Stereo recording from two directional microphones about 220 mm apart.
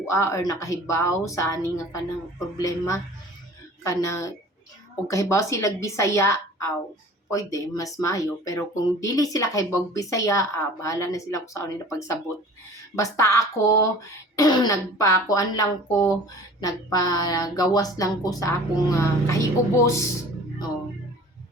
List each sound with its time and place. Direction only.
0.0 s speech: 15° left (ahead or behind)